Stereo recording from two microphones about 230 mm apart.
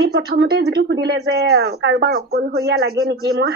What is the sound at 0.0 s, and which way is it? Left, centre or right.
A woman's voice, right.